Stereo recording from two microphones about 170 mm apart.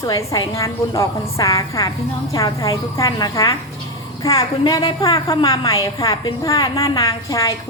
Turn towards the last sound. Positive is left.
turn(degrees=20)  # may be behind; listen again after turning